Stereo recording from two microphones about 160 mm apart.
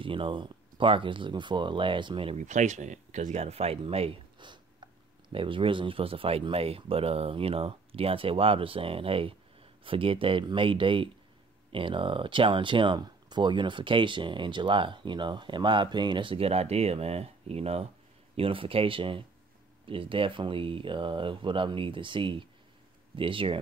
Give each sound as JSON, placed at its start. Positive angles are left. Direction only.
{"t": 0.0, "sound": "speech", "side_deg": -35}
{"t": 2.3, "sound": "speech", "side_deg": -50}